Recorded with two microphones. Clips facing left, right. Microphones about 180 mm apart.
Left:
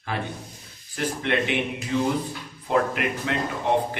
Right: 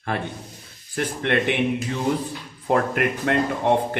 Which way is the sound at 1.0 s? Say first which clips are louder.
Right 2 dB; 55° right (ahead or behind).